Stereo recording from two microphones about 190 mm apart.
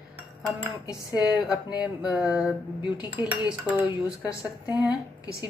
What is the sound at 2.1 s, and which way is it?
Speech, 5° right (ahead or behind).